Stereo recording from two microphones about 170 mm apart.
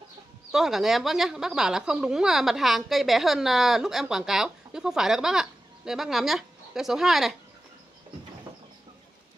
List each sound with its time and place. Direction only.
0.5 s speech: centre (ahead or behind)